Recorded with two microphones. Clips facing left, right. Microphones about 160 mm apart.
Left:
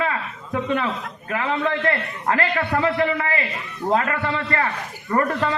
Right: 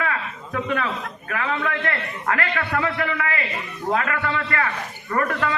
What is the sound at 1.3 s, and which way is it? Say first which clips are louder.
A man's voice: left 3 dB; 25° left (ahead or behind).